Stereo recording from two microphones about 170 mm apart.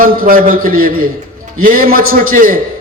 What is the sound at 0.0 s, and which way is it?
A man's voice, 55° right (ahead or behind).